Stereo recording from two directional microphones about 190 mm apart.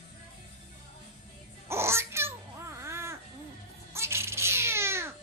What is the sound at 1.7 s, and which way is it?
Babbling, 15° right (ahead or behind).